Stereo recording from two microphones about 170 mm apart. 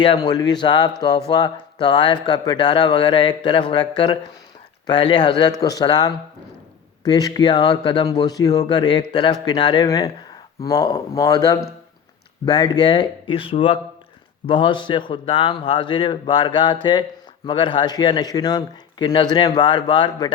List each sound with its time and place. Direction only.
0.0 s a man's voice: 25° left (ahead or behind)